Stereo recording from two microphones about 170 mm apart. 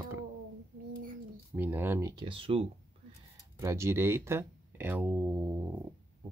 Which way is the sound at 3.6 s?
15° right (ahead or behind).